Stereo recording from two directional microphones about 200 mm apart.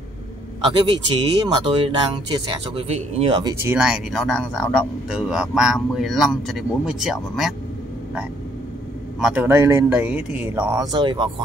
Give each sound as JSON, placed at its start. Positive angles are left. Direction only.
{"t": 0.7, "sound": "speech", "side_deg": -25}
{"t": 3.6, "sound": "speech", "side_deg": -5}
{"t": 9.2, "sound": "speech", "side_deg": -5}